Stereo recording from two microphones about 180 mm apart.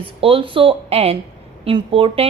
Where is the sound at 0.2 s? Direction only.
30° right (ahead or behind).